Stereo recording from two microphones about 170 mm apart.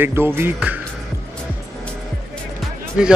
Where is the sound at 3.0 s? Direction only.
5° right (ahead or behind).